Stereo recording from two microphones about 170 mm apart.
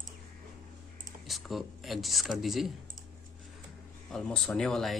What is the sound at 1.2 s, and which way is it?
Speech, centre (ahead or behind).